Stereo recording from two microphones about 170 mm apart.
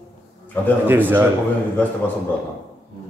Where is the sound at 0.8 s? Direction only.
10° right (ahead or behind).